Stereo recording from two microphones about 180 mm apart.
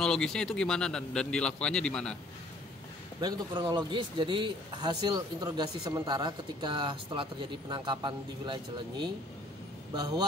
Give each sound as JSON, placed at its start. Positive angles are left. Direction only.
{"t": 0.0, "sound": "speech", "side_deg": 5}
{"t": 3.2, "sound": "speech", "side_deg": -25}